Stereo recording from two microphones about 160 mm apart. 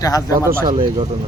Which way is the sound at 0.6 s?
35° right (ahead or behind).